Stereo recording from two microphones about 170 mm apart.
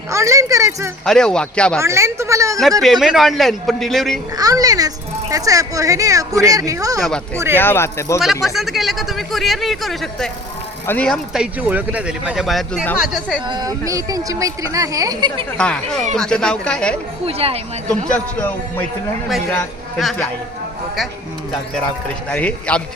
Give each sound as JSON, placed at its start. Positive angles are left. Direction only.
{"t": 0.1, "sound": "a sound", "side_deg": -20}
{"t": 1.0, "sound": "speech", "side_deg": 5}
{"t": 1.8, "sound": "speech", "side_deg": -15}
{"t": 2.8, "sound": "speech", "side_deg": 0}
{"t": 4.4, "sound": "speech", "side_deg": -20}
{"t": 7.5, "sound": "a man's voice", "side_deg": 10}
{"t": 8.5, "sound": "speech", "side_deg": 0}
{"t": 11.6, "sound": "speech", "side_deg": -10}
{"t": 13.5, "sound": "speech", "side_deg": -20}
{"t": 15.5, "sound": "speech", "side_deg": 5}
{"t": 17.2, "sound": "speech", "side_deg": -35}
{"t": 17.8, "sound": "a man's voice", "side_deg": 10}
{"t": 20.0, "sound": "speech", "side_deg": 0}
{"t": 22.3, "sound": "a man's voice", "side_deg": 10}